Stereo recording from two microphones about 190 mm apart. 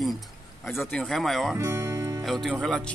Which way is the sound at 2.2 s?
Centre (ahead or behind).